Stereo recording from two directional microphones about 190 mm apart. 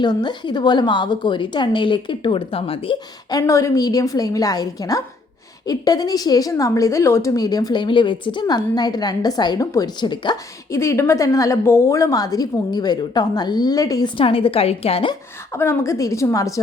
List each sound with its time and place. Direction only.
0.0 s a woman's voice: 20° left (ahead or behind)
15.5 s a woman's voice: 15° left (ahead or behind)